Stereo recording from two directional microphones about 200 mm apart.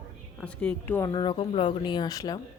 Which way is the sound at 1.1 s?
25° left (ahead or behind).